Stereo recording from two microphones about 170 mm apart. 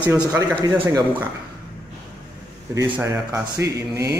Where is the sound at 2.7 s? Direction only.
15° right (ahead or behind).